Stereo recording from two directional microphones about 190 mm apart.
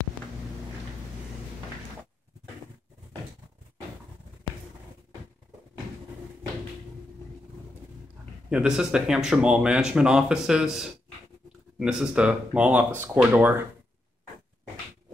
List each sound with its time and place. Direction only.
8.5 s speech: 5° right (ahead or behind)